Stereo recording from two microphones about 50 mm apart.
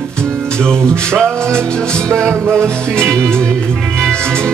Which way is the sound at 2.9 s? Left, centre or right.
Centre.